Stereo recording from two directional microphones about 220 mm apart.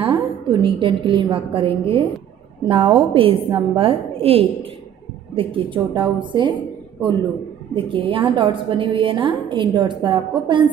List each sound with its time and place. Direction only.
0.0 s a woman's voice: 25° right (ahead or behind)
7.7 s a woman's voice: 25° right (ahead or behind)